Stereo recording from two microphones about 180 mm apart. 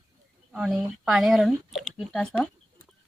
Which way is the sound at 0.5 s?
Centre (ahead or behind).